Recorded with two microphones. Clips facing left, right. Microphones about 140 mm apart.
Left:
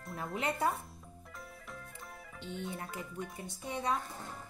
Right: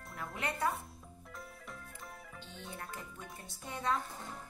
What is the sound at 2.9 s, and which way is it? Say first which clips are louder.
Speech: left 6 dB; centre (ahead or behind).